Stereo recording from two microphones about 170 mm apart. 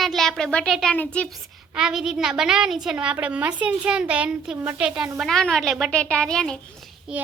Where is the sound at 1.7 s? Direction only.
5° right (ahead or behind).